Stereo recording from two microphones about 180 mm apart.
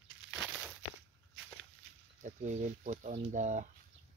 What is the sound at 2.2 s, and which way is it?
Speech, 45° right (ahead or behind).